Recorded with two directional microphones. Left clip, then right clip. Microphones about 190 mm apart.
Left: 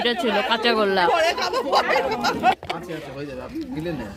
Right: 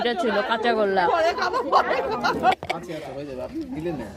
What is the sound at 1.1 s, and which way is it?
Speech, 40° left (ahead or behind).